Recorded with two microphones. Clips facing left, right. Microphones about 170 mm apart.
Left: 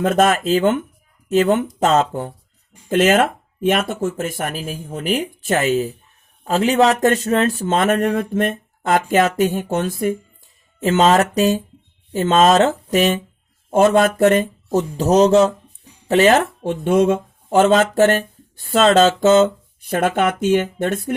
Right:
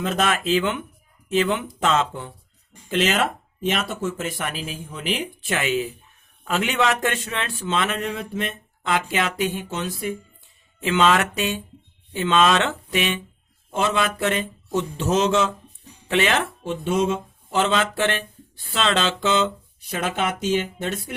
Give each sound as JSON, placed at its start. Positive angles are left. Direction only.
{"t": 0.0, "sound": "speech", "side_deg": 50}